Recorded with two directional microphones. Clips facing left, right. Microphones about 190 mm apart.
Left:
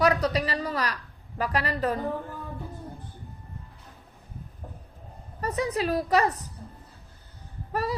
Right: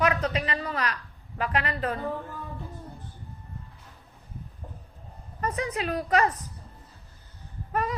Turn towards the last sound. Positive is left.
turn(degrees=35)  # may be behind; listen again after turning